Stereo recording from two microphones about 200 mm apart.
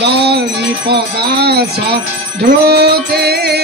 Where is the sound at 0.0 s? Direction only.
55° right (ahead or behind).